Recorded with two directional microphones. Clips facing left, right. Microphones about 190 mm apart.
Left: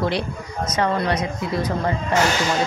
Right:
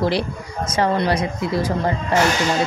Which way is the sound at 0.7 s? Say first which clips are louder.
Right 2 dB; 30° right (ahead or behind).